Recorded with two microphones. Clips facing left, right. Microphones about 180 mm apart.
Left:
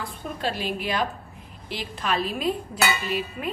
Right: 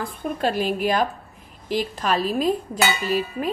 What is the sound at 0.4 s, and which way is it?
A woman's voice, 45° right (ahead or behind).